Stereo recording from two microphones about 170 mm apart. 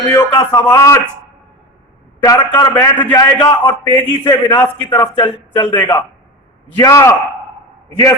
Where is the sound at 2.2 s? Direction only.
20° left (ahead or behind).